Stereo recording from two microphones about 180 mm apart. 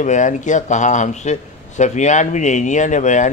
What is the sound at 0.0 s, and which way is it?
A man's voice, 40° left (ahead or behind).